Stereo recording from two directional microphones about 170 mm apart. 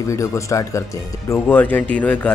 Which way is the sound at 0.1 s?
20° left (ahead or behind).